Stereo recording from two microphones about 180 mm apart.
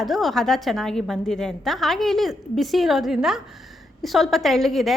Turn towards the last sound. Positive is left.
turn(degrees=0)  # may be behind; listen again after turning